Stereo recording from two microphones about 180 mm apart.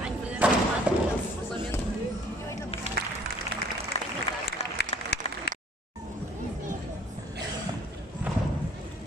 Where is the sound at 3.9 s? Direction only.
35° left (ahead or behind).